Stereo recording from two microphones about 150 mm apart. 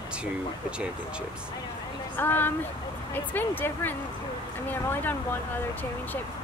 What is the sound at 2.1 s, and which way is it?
Speech, 15° left (ahead or behind).